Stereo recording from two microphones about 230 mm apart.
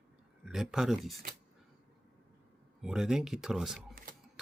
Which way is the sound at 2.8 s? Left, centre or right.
Centre.